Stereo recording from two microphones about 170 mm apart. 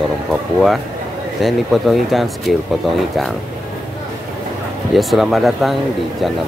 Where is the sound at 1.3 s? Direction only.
Centre (ahead or behind).